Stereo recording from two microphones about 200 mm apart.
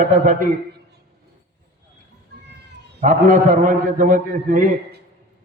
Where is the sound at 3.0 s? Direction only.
40° right (ahead or behind).